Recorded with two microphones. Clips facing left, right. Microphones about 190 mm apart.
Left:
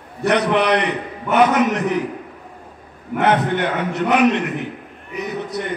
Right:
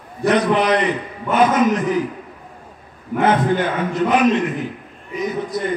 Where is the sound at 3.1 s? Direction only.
70° left (ahead or behind).